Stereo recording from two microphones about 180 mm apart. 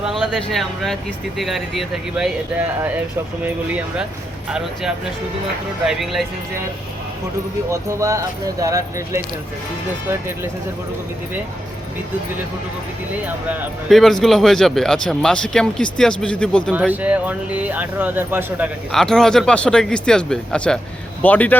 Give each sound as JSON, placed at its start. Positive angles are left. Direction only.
{"t": 0.0, "sound": "speech", "side_deg": 0}
{"t": 7.7, "sound": "speech", "side_deg": -15}
{"t": 13.2, "sound": "speech", "side_deg": -10}
{"t": 14.0, "sound": "speech", "side_deg": 0}
{"t": 16.7, "sound": "speech", "side_deg": -10}
{"t": 18.9, "sound": "speech", "side_deg": 5}